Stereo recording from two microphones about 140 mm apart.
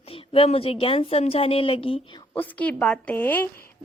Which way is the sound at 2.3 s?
10° left (ahead or behind).